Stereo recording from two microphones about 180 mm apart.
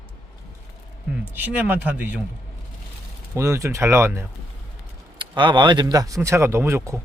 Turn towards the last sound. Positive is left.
turn(degrees=-15)  # may be behind; listen again after turning